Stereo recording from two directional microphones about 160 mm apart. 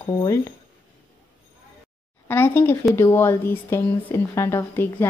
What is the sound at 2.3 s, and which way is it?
Speech, 15° left (ahead or behind).